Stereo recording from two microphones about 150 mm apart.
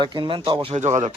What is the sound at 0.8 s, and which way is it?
Speech, 50° right (ahead or behind).